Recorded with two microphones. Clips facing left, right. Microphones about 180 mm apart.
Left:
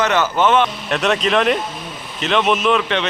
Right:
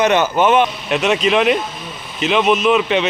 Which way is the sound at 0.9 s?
Centre (ahead or behind).